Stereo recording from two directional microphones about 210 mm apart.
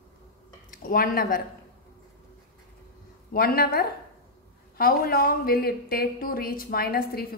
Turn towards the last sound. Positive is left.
turn(degrees=45)  # may be behind; listen again after turning